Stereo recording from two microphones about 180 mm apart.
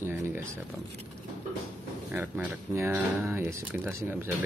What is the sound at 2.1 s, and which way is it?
Speech, 10° right (ahead or behind).